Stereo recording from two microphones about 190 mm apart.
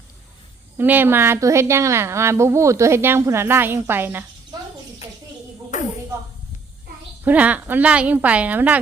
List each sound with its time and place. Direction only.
0.8 s a woman's voice: 10° right (ahead or behind)
5.7 s a sound: 40° left (ahead or behind)
7.3 s a woman's voice: 10° right (ahead or behind)